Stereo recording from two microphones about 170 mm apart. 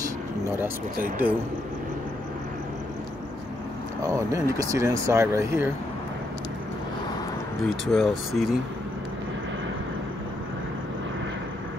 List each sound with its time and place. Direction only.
1.0 s speech: 10° right (ahead or behind)
4.0 s speech: 20° right (ahead or behind)
7.8 s speech: centre (ahead or behind)